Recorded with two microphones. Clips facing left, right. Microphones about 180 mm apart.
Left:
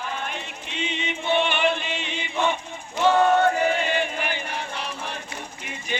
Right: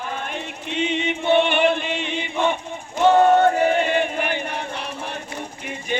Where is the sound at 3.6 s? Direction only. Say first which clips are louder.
Right 4 dB; 50° right (ahead or behind).